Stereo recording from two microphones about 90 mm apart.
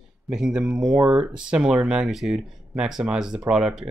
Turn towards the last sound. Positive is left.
turn(degrees=-10)  # may be behind; listen again after turning